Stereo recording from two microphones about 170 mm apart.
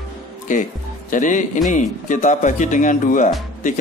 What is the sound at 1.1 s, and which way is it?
A man's voice, 50° left (ahead or behind).